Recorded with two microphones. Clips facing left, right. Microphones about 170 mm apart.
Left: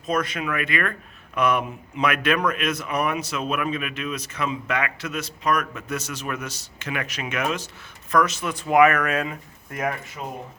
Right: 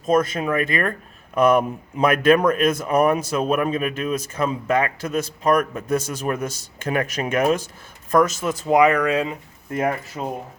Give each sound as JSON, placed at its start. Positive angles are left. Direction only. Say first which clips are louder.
{"t": 0.0, "sound": "a man's voice", "louder": "right 6 dB", "side_deg": -45}
{"t": 3.5, "sound": "a man's voice", "louder": "right 5 dB", "side_deg": -35}
{"t": 8.6, "sound": "speech", "louder": "right 1 dB", "side_deg": -20}